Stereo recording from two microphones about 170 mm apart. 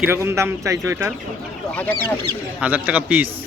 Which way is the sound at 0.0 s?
15° right (ahead or behind).